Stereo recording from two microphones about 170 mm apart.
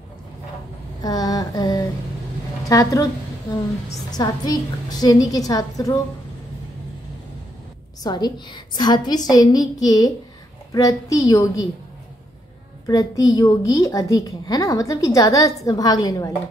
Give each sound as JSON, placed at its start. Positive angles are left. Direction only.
{"t": 1.0, "sound": "mantra", "side_deg": 20}
{"t": 2.7, "sound": "a woman's voice", "side_deg": 20}
{"t": 4.1, "sound": "a woman's voice", "side_deg": 25}
{"t": 8.0, "sound": "a woman's voice", "side_deg": 25}
{"t": 12.8, "sound": "a woman's voice", "side_deg": 20}